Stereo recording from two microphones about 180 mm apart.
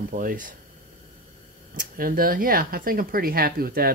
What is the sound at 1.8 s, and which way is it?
Speech, 50° right (ahead or behind).